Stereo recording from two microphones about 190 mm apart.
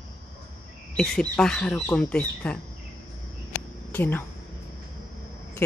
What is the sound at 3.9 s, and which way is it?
Speech, 10° left (ahead or behind).